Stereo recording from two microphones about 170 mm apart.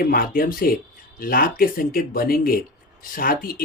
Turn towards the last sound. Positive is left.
turn(degrees=55)  # may be behind; listen again after turning